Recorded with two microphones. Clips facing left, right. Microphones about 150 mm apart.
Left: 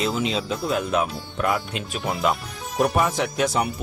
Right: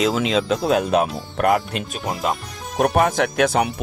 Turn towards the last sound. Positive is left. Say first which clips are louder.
# right 4 dB
turn(degrees=-70)  # may be behind; listen again after turning